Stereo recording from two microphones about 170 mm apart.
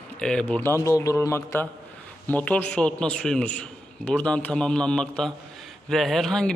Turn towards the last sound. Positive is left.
turn(degrees=5)  # may be behind; listen again after turning